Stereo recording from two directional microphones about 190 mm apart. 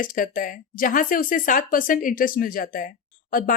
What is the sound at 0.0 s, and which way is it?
Speech, 45° left (ahead or behind).